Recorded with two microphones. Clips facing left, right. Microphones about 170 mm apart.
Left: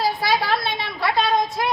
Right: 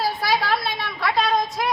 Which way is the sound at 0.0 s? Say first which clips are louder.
Left 1 dB; centre (ahead or behind).